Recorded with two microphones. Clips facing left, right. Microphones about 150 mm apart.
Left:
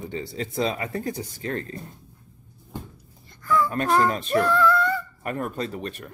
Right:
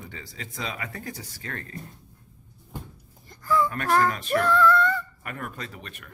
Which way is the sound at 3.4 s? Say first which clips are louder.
Left 1 dB; 30° right (ahead or behind).